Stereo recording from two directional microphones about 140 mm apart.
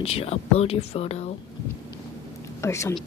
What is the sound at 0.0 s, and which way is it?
Speech, 45° left (ahead or behind).